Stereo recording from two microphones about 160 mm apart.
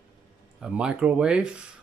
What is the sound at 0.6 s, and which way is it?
Speech, 5° right (ahead or behind).